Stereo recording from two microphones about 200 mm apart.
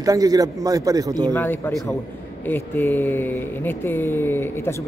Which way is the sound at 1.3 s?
10° left (ahead or behind).